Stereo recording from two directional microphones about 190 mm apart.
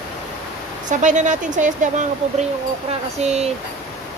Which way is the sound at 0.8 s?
40° right (ahead or behind).